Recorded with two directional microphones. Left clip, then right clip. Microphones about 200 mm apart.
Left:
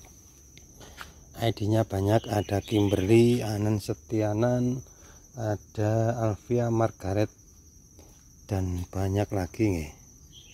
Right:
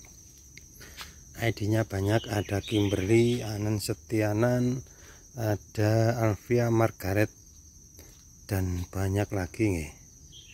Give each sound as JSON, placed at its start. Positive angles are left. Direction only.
{"t": 1.3, "sound": "speech", "side_deg": 10}
{"t": 3.7, "sound": "speech", "side_deg": 10}
{"t": 8.5, "sound": "speech", "side_deg": 5}